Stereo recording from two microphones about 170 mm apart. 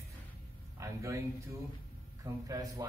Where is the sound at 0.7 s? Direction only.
20° right (ahead or behind).